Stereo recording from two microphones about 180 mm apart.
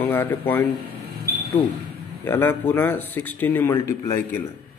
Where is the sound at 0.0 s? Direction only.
10° left (ahead or behind).